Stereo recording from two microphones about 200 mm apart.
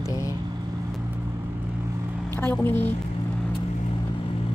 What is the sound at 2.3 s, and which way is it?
Speech, 10° left (ahead or behind).